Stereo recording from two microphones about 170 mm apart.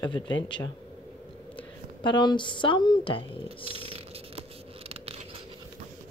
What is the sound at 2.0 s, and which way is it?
Speech, 25° left (ahead or behind).